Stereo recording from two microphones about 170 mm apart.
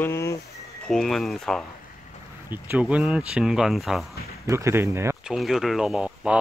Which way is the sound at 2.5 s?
10° right (ahead or behind).